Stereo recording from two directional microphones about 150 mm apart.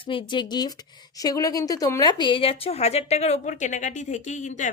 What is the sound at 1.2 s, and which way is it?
A woman's voice, 25° left (ahead or behind).